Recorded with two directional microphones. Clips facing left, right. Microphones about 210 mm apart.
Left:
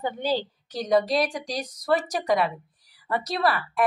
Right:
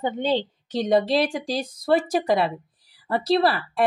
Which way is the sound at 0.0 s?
25° right (ahead or behind).